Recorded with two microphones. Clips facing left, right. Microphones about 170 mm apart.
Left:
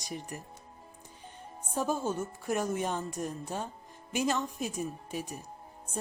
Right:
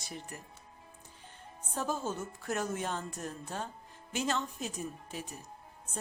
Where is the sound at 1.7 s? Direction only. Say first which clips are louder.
Left 4 dB; 10° left (ahead or behind).